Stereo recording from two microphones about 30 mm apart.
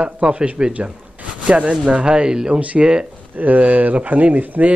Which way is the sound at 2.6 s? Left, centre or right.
Right.